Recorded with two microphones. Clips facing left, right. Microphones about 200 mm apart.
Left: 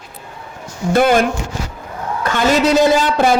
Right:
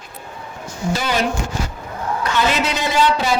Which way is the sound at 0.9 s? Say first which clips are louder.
Left 8 dB; 55° left (ahead or behind).